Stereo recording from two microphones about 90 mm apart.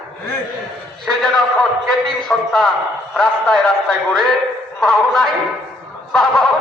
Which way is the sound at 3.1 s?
5° left (ahead or behind).